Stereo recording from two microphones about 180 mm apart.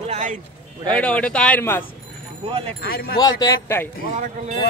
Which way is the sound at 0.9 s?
5° left (ahead or behind).